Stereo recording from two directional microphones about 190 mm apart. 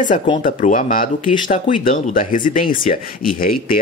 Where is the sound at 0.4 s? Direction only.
45° left (ahead or behind).